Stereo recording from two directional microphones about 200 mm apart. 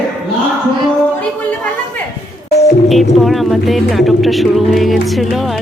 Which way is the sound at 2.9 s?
Centre (ahead or behind).